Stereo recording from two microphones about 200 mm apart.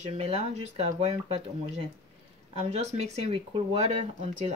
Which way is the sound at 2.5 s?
30° right (ahead or behind).